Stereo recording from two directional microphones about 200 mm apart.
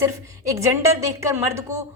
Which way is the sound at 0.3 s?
15° right (ahead or behind).